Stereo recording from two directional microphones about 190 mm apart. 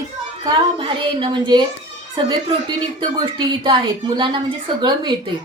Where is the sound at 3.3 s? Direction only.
25° right (ahead or behind).